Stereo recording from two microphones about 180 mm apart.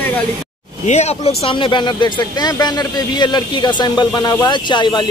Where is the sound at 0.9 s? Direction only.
40° left (ahead or behind).